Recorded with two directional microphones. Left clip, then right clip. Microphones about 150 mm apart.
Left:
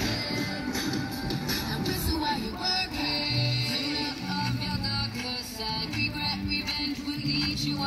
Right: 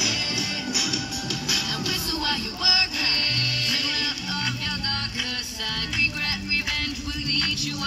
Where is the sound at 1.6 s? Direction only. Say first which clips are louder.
Right 6 dB; 75° left (ahead or behind).